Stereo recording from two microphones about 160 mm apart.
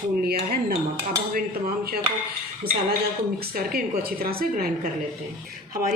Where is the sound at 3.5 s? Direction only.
70° right (ahead or behind).